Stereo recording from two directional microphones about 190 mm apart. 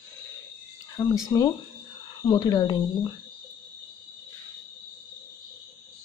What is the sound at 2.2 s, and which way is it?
Speech, 20° left (ahead or behind).